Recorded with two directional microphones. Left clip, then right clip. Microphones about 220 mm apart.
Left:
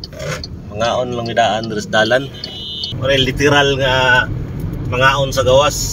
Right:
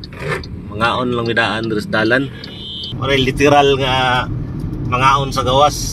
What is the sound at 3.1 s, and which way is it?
Speech, 35° right (ahead or behind).